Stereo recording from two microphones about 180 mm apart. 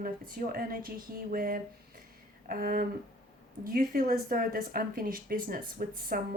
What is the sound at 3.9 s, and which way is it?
Speech, 50° right (ahead or behind).